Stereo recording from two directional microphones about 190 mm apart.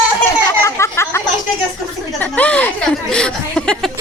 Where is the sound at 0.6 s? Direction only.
15° left (ahead or behind).